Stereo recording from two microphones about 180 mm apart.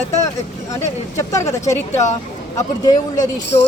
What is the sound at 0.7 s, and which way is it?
Speech, 15° left (ahead or behind).